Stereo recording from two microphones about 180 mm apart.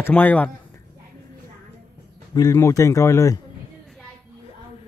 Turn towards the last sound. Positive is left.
turn(degrees=20)  # may be behind; listen again after turning